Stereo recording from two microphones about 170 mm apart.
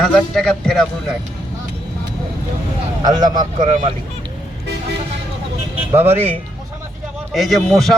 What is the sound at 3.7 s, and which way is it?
Speech, 40° right (ahead or behind).